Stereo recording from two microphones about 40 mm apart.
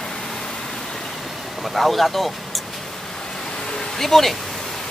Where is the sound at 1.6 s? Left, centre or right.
Centre.